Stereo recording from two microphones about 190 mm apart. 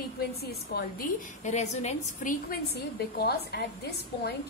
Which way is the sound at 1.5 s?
35° left (ahead or behind).